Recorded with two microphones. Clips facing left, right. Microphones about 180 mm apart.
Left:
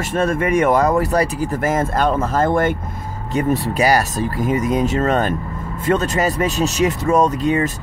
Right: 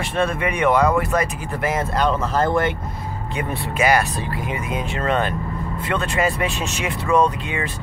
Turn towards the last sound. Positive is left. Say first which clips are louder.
# left 5 dB
turn(degrees=40)  # may be behind; listen again after turning